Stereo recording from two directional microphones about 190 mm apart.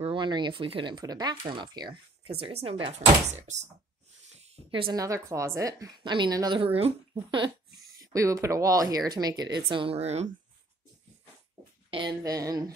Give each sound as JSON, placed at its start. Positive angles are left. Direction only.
{"t": 0.0, "sound": "a woman's voice", "side_deg": -25}
{"t": 4.6, "sound": "a woman's voice", "side_deg": -25}
{"t": 11.9, "sound": "a woman's voice", "side_deg": -25}